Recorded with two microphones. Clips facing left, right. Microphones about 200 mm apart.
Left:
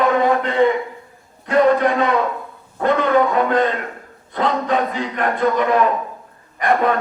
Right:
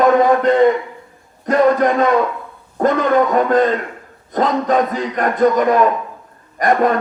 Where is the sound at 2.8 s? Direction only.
45° right (ahead or behind).